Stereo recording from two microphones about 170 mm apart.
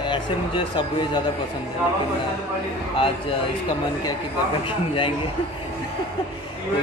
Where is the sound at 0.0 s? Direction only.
30° left (ahead or behind).